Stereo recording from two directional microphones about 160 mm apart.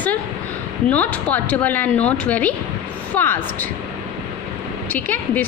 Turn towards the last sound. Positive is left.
turn(degrees=10)  # may be behind; listen again after turning